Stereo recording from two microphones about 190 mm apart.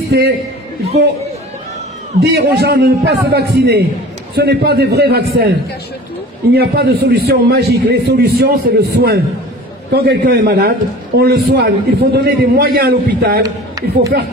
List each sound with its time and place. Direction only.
2.2 s a man's voice: 60° right (ahead or behind)
6.5 s a man's voice: 55° right (ahead or behind)
13.4 s speech: 20° right (ahead or behind)